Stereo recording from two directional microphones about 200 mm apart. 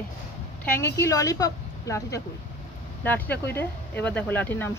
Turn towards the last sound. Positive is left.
turn(degrees=10)  # may be behind; listen again after turning